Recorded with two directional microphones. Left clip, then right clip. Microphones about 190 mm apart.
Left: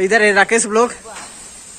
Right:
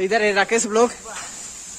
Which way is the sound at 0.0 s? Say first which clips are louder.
Left 6 dB; centre (ahead or behind).